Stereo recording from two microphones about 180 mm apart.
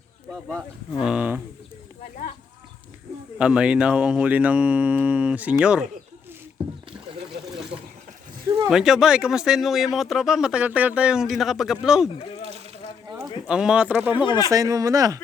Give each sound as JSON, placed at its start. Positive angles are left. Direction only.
{"t": 0.4, "sound": "speech", "side_deg": 0}
{"t": 3.3, "sound": "speech", "side_deg": -5}
{"t": 8.7, "sound": "speech", "side_deg": -5}
{"t": 13.1, "sound": "a sound", "side_deg": -20}
{"t": 13.5, "sound": "speech", "side_deg": -5}